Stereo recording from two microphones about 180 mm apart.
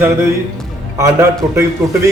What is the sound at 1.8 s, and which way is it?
Speech, 15° right (ahead or behind).